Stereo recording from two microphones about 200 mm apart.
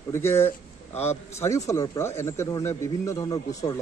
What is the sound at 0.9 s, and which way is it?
Speech, 30° left (ahead or behind).